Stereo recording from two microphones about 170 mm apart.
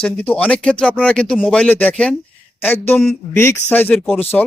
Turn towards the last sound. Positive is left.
turn(degrees=10)  # may be behind; listen again after turning